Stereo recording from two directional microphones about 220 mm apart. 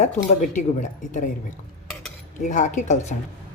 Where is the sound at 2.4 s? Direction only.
35° left (ahead or behind).